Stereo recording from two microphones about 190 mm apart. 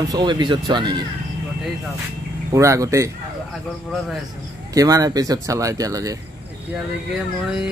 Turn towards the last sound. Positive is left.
turn(degrees=-20)  # may be behind; listen again after turning